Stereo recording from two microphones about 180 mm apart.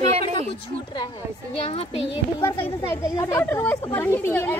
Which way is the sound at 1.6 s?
35° left (ahead or behind).